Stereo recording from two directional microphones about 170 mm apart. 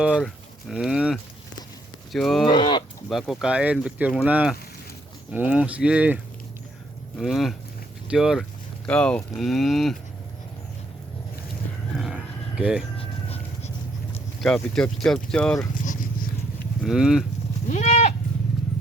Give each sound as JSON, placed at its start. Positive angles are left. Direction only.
{"t": 0.0, "sound": "speech", "side_deg": -5}
{"t": 2.5, "sound": "speech", "side_deg": 25}
{"t": 3.1, "sound": "speech", "side_deg": 0}
{"t": 7.2, "sound": "speech", "side_deg": 0}
{"t": 11.9, "sound": "a sound", "side_deg": -5}
{"t": 13.0, "sound": "music", "side_deg": 35}
{"t": 14.4, "sound": "speech", "side_deg": 5}
{"t": 15.7, "sound": "vehicle", "side_deg": 50}
{"t": 16.8, "sound": "speech", "side_deg": -5}
{"t": 17.7, "sound": "goat", "side_deg": 45}